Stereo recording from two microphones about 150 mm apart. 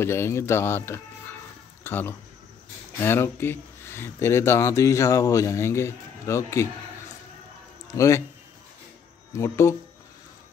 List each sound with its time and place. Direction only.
0.0 s speech: 15° left (ahead or behind)
7.9 s speech: 20° left (ahead or behind)
9.3 s speech: 20° left (ahead or behind)